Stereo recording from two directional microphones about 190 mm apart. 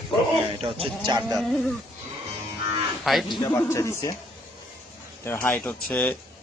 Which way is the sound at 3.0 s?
Centre (ahead or behind).